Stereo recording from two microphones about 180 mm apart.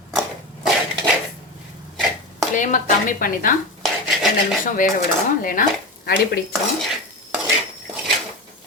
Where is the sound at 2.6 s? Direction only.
50° left (ahead or behind).